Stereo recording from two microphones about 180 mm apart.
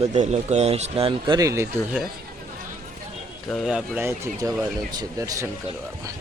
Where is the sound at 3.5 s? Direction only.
5° right (ahead or behind).